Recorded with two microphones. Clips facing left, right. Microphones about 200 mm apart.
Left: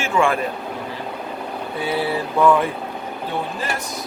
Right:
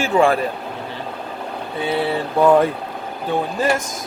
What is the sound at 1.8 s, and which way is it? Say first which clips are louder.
Speech: right 2 dB; 25° right (ahead or behind).